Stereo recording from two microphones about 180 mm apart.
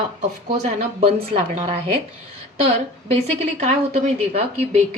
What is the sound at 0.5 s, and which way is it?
A woman's voice, 40° right (ahead or behind).